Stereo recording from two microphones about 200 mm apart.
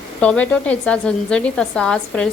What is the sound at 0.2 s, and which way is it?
A woman's voice, 5° left (ahead or behind).